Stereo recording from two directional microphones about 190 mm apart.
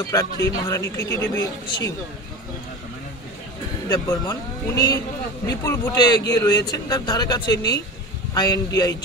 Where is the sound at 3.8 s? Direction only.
20° left (ahead or behind).